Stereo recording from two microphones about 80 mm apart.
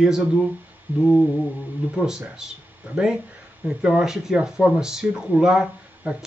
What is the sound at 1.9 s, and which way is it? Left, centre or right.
Speech, centre.